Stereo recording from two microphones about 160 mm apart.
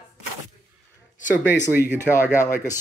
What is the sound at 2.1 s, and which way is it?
Speech, 15° left (ahead or behind).